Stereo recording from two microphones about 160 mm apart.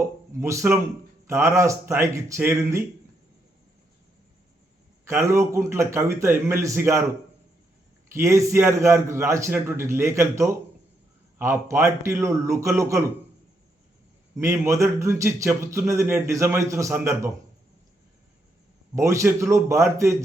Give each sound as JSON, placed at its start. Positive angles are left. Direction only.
{"t": 0.0, "sound": "a sound", "side_deg": -20}
{"t": 1.3, "sound": "a man's voice", "side_deg": -15}
{"t": 5.0, "sound": "a man's voice", "side_deg": -15}
{"t": 8.1, "sound": "a man's voice", "side_deg": -20}
{"t": 14.3, "sound": "a man's voice", "side_deg": -20}
{"t": 18.9, "sound": "a man's voice", "side_deg": -20}